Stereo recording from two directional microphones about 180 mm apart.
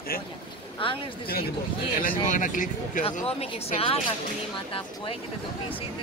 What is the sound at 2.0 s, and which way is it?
Speech, 50° left (ahead or behind).